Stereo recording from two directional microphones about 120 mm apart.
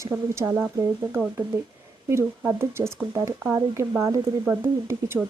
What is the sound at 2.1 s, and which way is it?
Speech, 20° right (ahead or behind).